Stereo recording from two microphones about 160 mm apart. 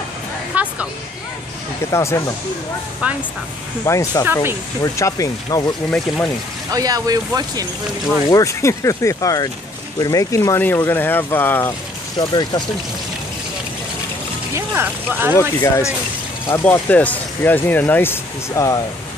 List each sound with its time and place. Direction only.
0.5 s a sound: 10° right (ahead or behind)
1.9 s speech: 15° left (ahead or behind)
3.8 s speech: 20° left (ahead or behind)
4.2 s speech: 15° right (ahead or behind)
4.8 s speech: 20° left (ahead or behind)
5.9 s speech: 5° left (ahead or behind)
6.7 s speech: 25° right (ahead or behind)
8.3 s speech: 20° left (ahead or behind)
12.2 s speech: 25° left (ahead or behind)
14.5 s speech: 15° right (ahead or behind)
15.6 s speech: 15° left (ahead or behind)